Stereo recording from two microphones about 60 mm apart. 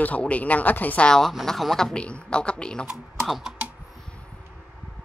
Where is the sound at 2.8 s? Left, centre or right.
Centre.